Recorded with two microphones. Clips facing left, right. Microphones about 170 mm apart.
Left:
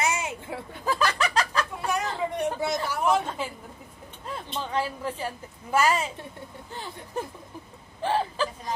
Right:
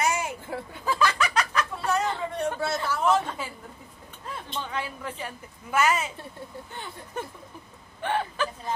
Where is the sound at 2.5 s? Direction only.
15° left (ahead or behind).